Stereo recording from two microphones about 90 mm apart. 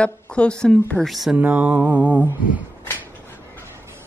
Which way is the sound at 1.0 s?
Centre (ahead or behind).